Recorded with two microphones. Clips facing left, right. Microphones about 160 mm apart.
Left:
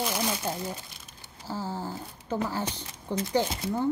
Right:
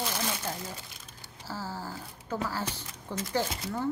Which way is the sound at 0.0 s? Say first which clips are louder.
Left 4 dB; 15° left (ahead or behind).